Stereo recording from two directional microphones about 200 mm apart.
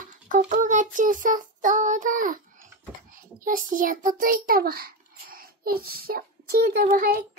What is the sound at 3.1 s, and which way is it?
Child singing, 40° right (ahead or behind).